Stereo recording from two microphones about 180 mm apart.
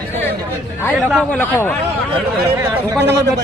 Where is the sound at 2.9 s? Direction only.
15° right (ahead or behind).